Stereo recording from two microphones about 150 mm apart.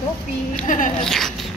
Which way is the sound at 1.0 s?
Centre (ahead or behind).